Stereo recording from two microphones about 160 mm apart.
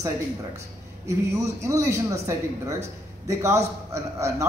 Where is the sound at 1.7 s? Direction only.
20° right (ahead or behind).